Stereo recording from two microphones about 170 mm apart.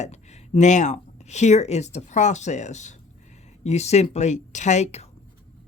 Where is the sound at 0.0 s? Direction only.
40° left (ahead or behind).